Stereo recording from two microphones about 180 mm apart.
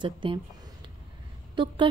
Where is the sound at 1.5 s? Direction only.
25° right (ahead or behind).